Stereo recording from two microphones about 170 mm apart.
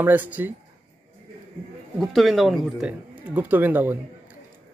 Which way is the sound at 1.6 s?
30° right (ahead or behind).